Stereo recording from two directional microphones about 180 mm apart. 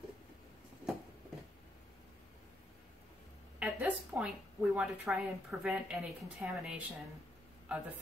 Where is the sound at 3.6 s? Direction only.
10° right (ahead or behind).